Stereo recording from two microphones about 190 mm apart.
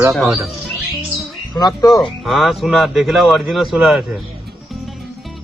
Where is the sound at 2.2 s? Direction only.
Centre (ahead or behind).